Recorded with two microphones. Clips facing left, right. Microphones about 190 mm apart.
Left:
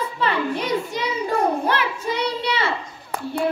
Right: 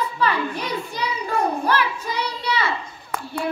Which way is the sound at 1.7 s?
25° left (ahead or behind).